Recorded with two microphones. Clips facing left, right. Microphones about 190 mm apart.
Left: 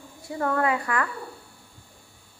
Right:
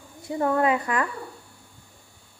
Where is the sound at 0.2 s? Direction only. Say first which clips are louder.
Right 3 dB; 20° right (ahead or behind).